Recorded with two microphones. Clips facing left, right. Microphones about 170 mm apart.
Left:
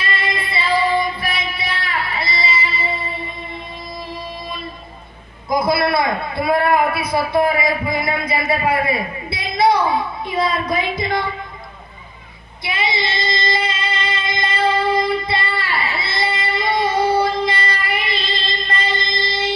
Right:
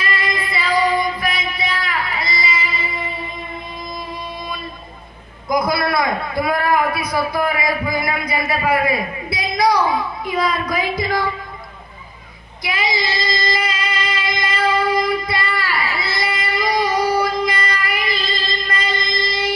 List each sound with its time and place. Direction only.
0.0 s music: 30° left (ahead or behind)
5.5 s a man's voice: 25° left (ahead or behind)
12.6 s child singing: 25° left (ahead or behind)